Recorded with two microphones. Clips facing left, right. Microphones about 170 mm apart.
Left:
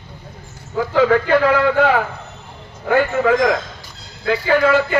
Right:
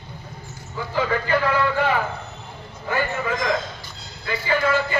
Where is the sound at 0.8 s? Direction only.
85° left.